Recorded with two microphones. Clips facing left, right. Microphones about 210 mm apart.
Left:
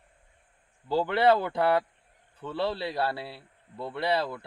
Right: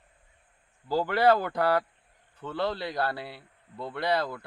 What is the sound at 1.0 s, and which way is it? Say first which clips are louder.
Speech: even; 25° left (ahead or behind).